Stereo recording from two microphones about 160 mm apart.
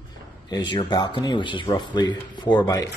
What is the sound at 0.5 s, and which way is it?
Speech, 25° left (ahead or behind).